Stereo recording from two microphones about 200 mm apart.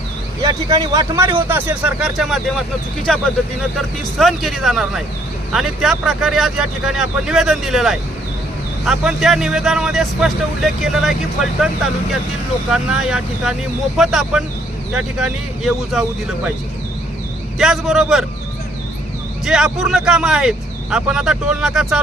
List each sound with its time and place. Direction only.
0.4 s a man's voice: 20° right (ahead or behind); by 11.1 s centre (ahead or behind)
12.7 s a man's voice: centre (ahead or behind)
17.6 s a man's voice: centre (ahead or behind)
19.5 s a man's voice: 5° right (ahead or behind)